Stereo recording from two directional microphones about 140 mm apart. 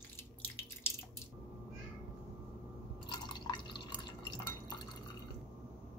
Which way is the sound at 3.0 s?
35° left (ahead or behind).